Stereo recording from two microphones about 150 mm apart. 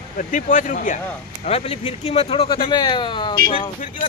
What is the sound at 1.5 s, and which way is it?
Speech, 40° left (ahead or behind).